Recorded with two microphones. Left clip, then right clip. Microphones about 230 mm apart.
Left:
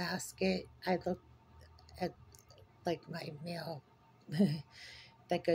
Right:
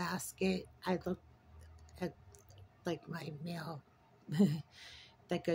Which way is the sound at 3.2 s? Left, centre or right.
Right.